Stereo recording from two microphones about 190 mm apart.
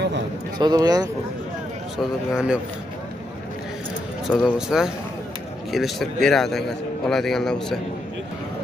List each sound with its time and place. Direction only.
0.6 s speech: 20° right (ahead or behind)
2.0 s a man's voice: 5° right (ahead or behind)
4.3 s a man's voice: centre (ahead or behind)